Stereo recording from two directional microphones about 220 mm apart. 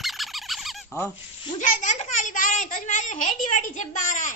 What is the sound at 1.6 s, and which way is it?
A woman's voice, 35° left (ahead or behind).